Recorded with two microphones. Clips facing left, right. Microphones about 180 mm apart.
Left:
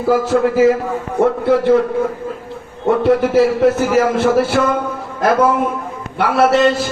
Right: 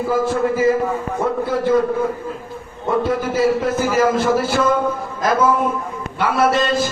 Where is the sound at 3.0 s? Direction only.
65° left (ahead or behind).